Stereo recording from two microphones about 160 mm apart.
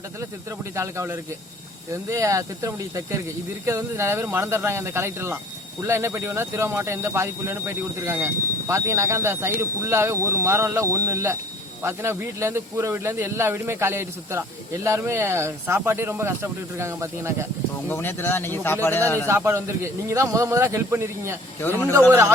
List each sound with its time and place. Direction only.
0.8 s speech: 15° right (ahead or behind)
17.8 s speech: 15° left (ahead or behind)
19.3 s speech: 15° right (ahead or behind)
21.6 s speech: 15° left (ahead or behind)